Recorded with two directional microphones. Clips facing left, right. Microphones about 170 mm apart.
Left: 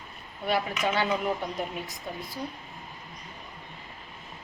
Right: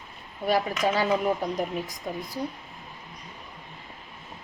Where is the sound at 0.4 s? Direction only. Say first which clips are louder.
Right 3 dB; 35° right (ahead or behind).